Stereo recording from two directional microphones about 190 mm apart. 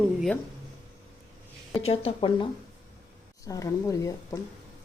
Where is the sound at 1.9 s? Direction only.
30° left (ahead or behind).